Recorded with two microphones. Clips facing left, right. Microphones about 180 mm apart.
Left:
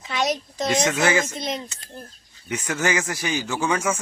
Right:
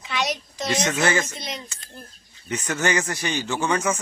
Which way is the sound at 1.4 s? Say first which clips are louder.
Left 6 dB; 50° left (ahead or behind).